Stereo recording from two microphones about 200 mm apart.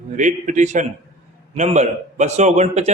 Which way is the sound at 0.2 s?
40° right (ahead or behind).